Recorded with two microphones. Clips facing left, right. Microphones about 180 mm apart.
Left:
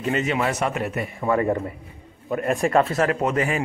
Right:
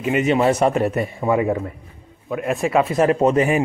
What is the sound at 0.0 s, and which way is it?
A man's voice, 15° right (ahead or behind).